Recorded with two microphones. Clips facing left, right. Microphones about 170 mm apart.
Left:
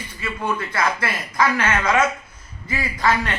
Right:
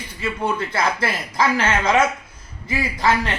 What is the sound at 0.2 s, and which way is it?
A man's voice, 25° right (ahead or behind).